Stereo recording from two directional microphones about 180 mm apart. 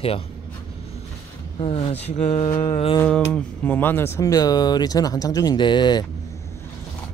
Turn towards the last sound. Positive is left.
turn(degrees=25)  # may be behind; listen again after turning